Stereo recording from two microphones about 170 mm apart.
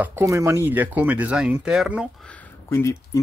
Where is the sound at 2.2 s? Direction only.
10° left (ahead or behind).